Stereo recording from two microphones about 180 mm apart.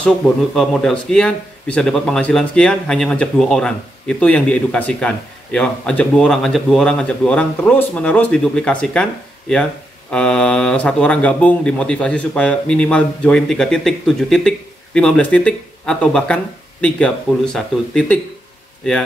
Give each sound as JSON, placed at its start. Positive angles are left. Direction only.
{"t": 0.6, "sound": "speech", "side_deg": 0}
{"t": 10.1, "sound": "speech", "side_deg": 5}